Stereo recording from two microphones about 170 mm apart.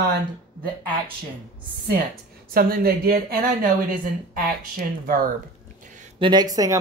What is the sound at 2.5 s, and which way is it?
Speech, 60° right (ahead or behind).